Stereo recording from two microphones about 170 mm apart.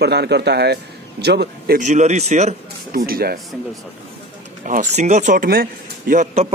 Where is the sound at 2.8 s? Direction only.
60° right (ahead or behind).